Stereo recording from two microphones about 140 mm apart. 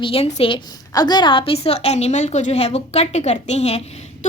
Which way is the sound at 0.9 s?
30° left (ahead or behind).